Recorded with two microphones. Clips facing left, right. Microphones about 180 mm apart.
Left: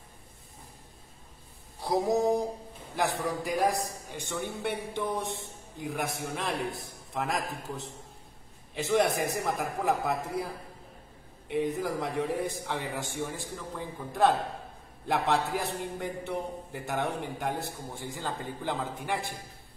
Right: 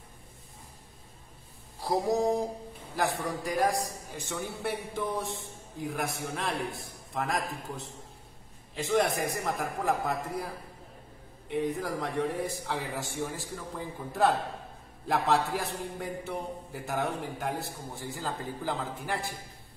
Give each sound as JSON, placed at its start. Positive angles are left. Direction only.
{"t": 1.8, "sound": "a man's voice", "side_deg": 0}